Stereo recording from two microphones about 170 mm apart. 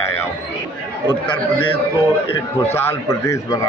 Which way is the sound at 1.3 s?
10° left (ahead or behind).